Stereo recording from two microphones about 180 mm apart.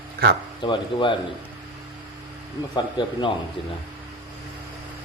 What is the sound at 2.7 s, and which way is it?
Speech, 25° left (ahead or behind).